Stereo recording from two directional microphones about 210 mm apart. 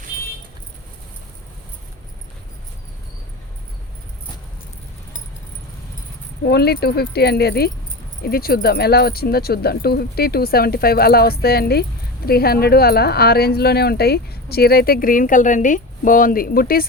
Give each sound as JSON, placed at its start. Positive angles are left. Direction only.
{"t": 6.4, "sound": "speech", "side_deg": 50}